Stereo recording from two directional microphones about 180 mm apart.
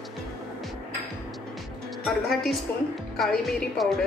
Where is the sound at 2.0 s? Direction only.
Centre (ahead or behind).